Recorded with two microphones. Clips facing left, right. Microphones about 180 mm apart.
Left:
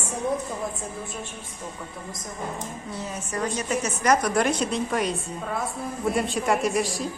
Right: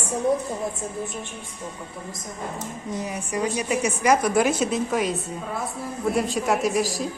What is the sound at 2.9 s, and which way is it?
A woman's voice, 15° right (ahead or behind).